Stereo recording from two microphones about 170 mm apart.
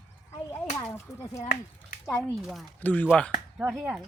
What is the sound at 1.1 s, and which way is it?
Speech, 20° left (ahead or behind).